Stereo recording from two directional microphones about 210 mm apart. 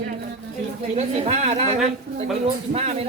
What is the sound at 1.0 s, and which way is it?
Speech, 30° right (ahead or behind).